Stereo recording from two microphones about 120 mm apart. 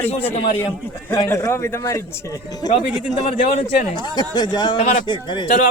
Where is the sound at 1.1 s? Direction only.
25° left (ahead or behind).